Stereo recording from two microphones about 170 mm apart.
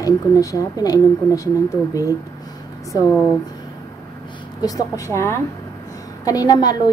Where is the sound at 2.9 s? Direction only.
20° left (ahead or behind).